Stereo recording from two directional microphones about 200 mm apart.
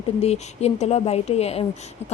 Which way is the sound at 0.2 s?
30° left (ahead or behind).